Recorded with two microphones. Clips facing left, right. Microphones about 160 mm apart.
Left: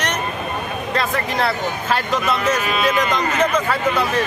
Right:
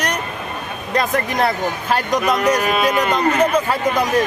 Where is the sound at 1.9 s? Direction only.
15° right (ahead or behind).